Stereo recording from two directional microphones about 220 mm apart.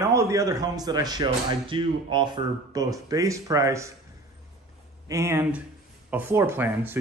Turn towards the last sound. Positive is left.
turn(degrees=-10)  # may be behind; listen again after turning